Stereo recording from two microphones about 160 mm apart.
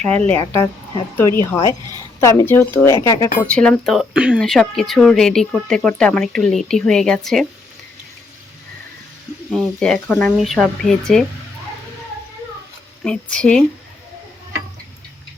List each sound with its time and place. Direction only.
0.0 s speech: 10° left (ahead or behind)
3.4 s speech: 5° left (ahead or behind)
9.5 s speech: 5° left (ahead or behind)
10.3 s speech: centre (ahead or behind)
13.1 s speech: 5° left (ahead or behind)